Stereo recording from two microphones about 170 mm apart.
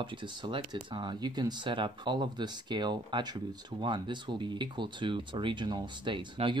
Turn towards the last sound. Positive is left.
turn(degrees=-30)  # may be behind; listen again after turning